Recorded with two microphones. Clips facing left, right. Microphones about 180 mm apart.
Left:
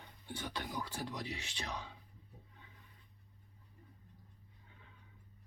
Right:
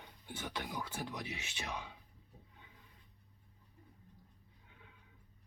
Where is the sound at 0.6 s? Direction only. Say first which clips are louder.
Even; centre (ahead or behind).